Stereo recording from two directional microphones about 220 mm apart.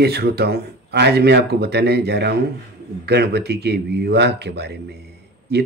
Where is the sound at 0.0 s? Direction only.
45° right (ahead or behind).